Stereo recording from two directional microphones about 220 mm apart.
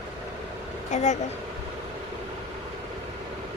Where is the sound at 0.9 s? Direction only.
30° left (ahead or behind).